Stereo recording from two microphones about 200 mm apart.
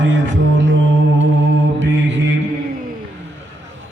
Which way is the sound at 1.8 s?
65° right (ahead or behind).